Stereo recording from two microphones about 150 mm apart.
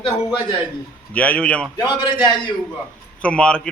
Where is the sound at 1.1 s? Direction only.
10° left (ahead or behind).